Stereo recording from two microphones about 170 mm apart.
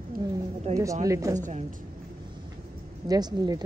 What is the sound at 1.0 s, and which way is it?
Speech, 20° right (ahead or behind).